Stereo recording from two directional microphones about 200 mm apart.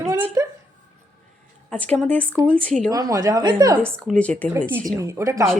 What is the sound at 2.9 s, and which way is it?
Speech, 20° right (ahead or behind).